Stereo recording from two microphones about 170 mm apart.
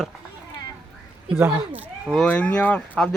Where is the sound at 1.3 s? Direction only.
15° right (ahead or behind).